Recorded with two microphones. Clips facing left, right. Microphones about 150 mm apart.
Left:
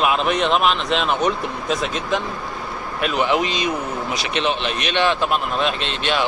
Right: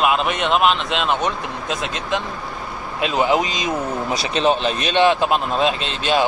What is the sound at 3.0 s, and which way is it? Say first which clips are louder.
Speech: right 1 dB; 25° right (ahead or behind).